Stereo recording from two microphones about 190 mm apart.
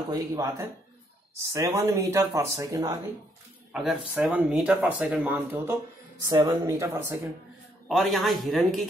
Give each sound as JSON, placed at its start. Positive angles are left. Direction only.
{"t": 0.1, "sound": "speech", "side_deg": -15}
{"t": 3.7, "sound": "speech", "side_deg": 0}
{"t": 6.2, "sound": "speech", "side_deg": -20}
{"t": 7.9, "sound": "speech", "side_deg": 0}